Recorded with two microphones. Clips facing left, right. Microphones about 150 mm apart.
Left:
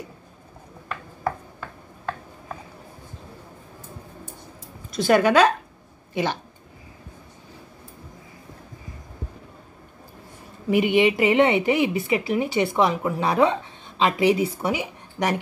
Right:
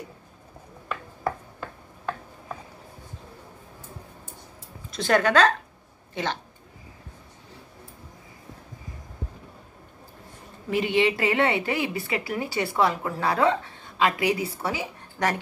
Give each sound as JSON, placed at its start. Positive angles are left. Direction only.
{"t": 4.9, "sound": "speech", "side_deg": 5}
{"t": 10.7, "sound": "speech", "side_deg": 15}